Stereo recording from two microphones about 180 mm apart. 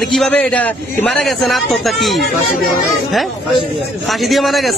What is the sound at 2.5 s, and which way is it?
Speech, 55° left (ahead or behind).